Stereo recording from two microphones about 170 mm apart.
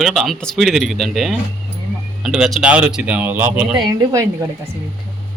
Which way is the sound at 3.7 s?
25° right (ahead or behind).